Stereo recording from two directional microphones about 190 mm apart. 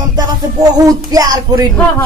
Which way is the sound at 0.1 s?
20° right (ahead or behind).